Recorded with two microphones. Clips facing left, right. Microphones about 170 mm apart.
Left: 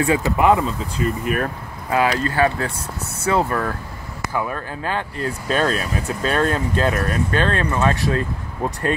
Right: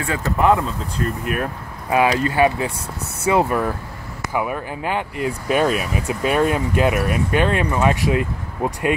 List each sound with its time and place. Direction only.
0.2 s speech: centre (ahead or behind)
1.9 s speech: 20° right (ahead or behind)